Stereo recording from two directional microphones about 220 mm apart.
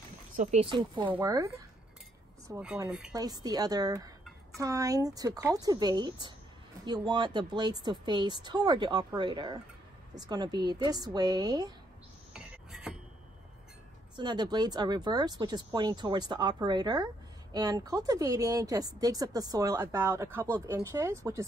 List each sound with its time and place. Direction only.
0.4 s speech: 30° right (ahead or behind)
1.0 s a woman's voice: 10° right (ahead or behind)
14.1 s speech: 20° right (ahead or behind)